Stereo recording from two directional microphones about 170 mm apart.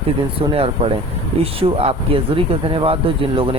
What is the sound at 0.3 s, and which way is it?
Speech, 35° right (ahead or behind).